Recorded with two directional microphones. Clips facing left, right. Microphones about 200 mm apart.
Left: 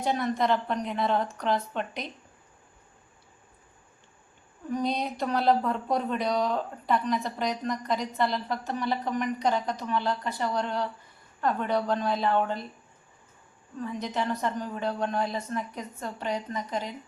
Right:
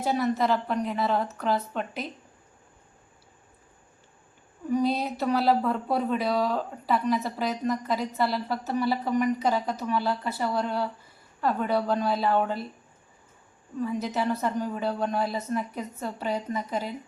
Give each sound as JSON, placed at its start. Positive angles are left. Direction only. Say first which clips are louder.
{"t": 0.0, "sound": "speech", "louder": "right 2 dB", "side_deg": -5}
{"t": 4.7, "sound": "speech", "louder": "right 4 dB", "side_deg": -5}
{"t": 13.8, "sound": "a woman's voice", "louder": "right 3 dB", "side_deg": -5}